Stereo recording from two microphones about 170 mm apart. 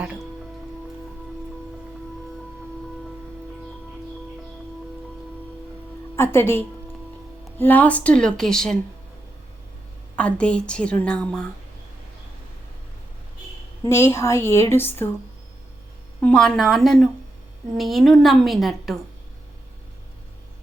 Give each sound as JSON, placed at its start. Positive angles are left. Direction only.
{"t": 6.1, "sound": "a woman's voice", "side_deg": 15}
{"t": 10.2, "sound": "a woman's voice", "side_deg": 5}
{"t": 13.8, "sound": "a woman's voice", "side_deg": 15}
{"t": 16.2, "sound": "a woman's voice", "side_deg": 5}